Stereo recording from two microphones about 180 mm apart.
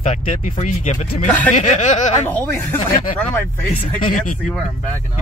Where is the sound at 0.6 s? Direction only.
40° left (ahead or behind).